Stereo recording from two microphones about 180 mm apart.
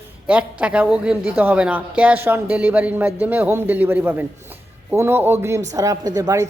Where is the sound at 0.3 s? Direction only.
5° right (ahead or behind).